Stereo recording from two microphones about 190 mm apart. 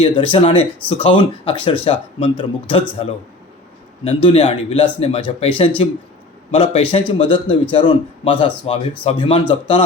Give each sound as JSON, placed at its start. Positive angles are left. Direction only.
{"t": 0.0, "sound": "speech", "side_deg": 30}
{"t": 4.0, "sound": "a man's voice", "side_deg": 30}